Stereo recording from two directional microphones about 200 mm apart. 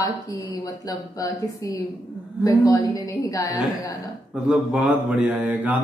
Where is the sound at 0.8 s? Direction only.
15° left (ahead or behind).